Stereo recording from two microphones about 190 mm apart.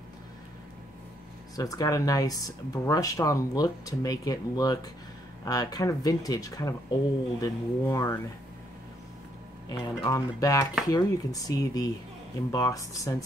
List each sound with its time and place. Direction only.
1.6 s speech: 20° left (ahead or behind)
9.7 s speech: 20° left (ahead or behind)